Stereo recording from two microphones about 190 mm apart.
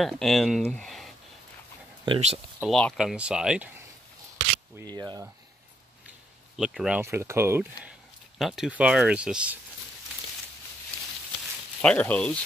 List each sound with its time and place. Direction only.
0.0 s speech: centre (ahead or behind)
2.0 s speech: 30° right (ahead or behind)
2.6 s speech: centre (ahead or behind)
4.9 s speech: 20° right (ahead or behind)
6.5 s speech: centre (ahead or behind)
7.0 s speech: 15° right (ahead or behind)
8.4 s speech: centre (ahead or behind)
11.8 s speech: 5° left (ahead or behind)